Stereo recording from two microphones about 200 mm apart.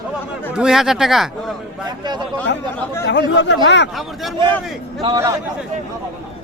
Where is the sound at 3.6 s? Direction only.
60° left (ahead or behind).